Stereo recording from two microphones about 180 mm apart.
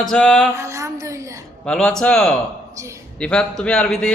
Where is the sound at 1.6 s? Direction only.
5° left (ahead or behind).